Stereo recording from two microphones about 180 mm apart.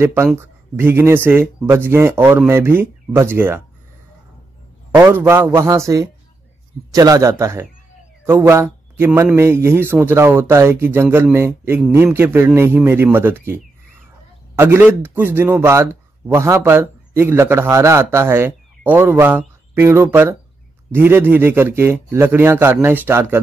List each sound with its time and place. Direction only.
0.0 s a man's voice: 15° right (ahead or behind)
4.9 s a man's voice: 10° right (ahead or behind)